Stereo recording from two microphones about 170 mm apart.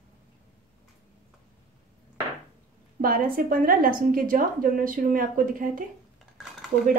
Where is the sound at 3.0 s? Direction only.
55° right (ahead or behind).